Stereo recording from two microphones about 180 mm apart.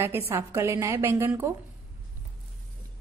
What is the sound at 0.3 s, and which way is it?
A woman's voice, 15° right (ahead or behind).